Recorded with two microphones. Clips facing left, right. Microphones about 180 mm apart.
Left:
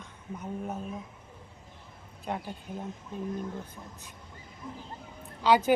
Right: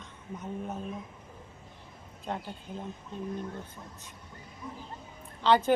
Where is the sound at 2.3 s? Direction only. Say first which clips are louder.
Left 1 dB; 10° left (ahead or behind).